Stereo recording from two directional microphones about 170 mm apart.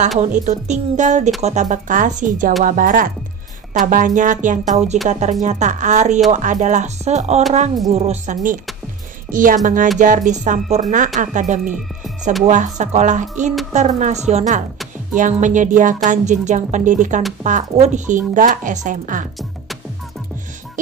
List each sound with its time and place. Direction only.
0.5 s speech: 45° right (ahead or behind)